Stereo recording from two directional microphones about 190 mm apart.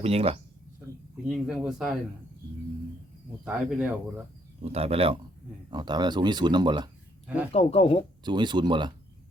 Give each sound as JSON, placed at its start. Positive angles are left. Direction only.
{"t": 0.0, "sound": "speech", "side_deg": -30}
{"t": 1.3, "sound": "speech", "side_deg": -5}
{"t": 3.4, "sound": "speech", "side_deg": -5}
{"t": 4.6, "sound": "speech", "side_deg": -30}
{"t": 7.5, "sound": "speech", "side_deg": 35}
{"t": 8.2, "sound": "speech", "side_deg": -25}